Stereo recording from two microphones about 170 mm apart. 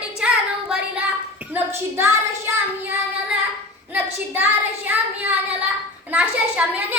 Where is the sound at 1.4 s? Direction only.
10° right (ahead or behind).